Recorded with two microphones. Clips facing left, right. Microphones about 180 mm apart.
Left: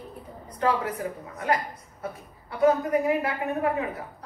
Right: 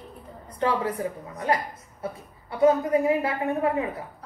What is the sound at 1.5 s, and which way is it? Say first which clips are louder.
A woman's voice: right 1 dB; 30° right (ahead or behind).